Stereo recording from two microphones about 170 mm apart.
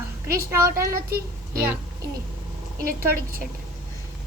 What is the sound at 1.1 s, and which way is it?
Speech, 60° right (ahead or behind).